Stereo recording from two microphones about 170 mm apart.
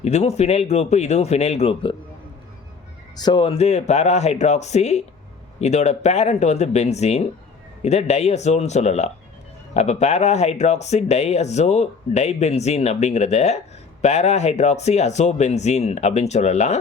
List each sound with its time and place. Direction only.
0.0 s speech: 40° left (ahead or behind)
3.2 s speech: 25° left (ahead or behind); by 16.7 s 40° left (ahead or behind)